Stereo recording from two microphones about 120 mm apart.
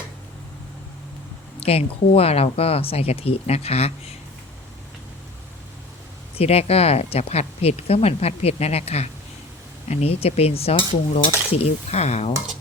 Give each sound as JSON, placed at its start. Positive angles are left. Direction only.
{"t": 1.5, "sound": "speech", "side_deg": 55}
{"t": 6.4, "sound": "speech", "side_deg": 55}